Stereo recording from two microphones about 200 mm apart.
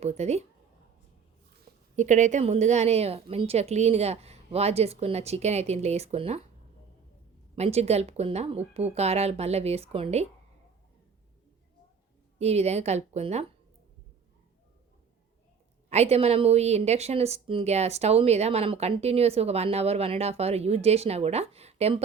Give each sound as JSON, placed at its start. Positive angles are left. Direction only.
{"t": 0.0, "sound": "a woman's voice", "side_deg": -35}
{"t": 2.0, "sound": "a woman's voice", "side_deg": -35}
{"t": 7.5, "sound": "a woman's voice", "side_deg": -30}
{"t": 12.4, "sound": "a woman's voice", "side_deg": -30}
{"t": 15.9, "sound": "a woman's voice", "side_deg": -30}